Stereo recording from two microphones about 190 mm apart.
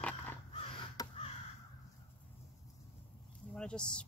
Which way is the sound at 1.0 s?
20° left (ahead or behind).